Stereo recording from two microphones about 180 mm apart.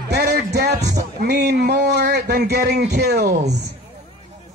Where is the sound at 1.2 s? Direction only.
65° right (ahead or behind).